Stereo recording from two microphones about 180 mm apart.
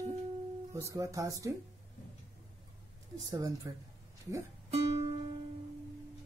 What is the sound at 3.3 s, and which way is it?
Speech, 20° right (ahead or behind).